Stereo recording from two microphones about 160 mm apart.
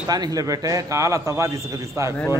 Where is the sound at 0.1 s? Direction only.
25° right (ahead or behind).